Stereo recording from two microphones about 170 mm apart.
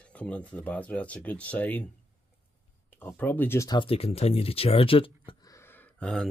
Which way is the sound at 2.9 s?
10° left (ahead or behind).